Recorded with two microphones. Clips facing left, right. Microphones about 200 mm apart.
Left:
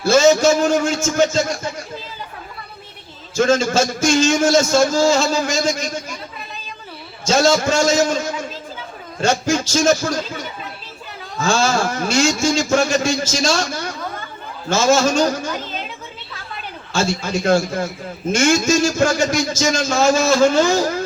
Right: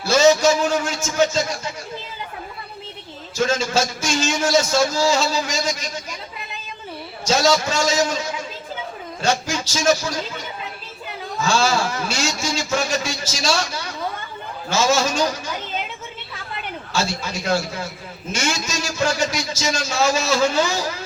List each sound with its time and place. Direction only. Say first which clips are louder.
0.0 s a man's voice: left 2 dB; 50° left (ahead or behind)
3.3 s a man's voice: left 5 dB; 50° left (ahead or behind)
7.3 s a man's voice: left 3 dB; 50° left (ahead or behind)
11.3 s a man's voice: left 2 dB; 50° left (ahead or behind)
16.9 s a man's voice: left 5 dB; 50° left (ahead or behind)